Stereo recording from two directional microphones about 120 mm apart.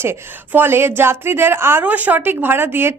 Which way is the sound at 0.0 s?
20° right (ahead or behind).